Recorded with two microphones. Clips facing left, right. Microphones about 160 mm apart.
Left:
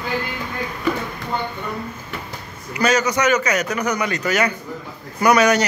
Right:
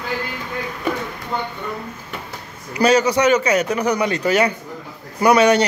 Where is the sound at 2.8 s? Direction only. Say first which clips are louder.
Right 3 dB; 30° right (ahead or behind).